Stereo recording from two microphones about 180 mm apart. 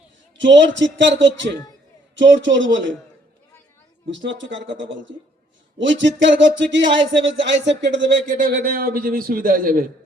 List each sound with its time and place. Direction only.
0.4 s speech: 90° right
4.1 s speech: 90° right
8.3 s a man's voice: 55° right (ahead or behind)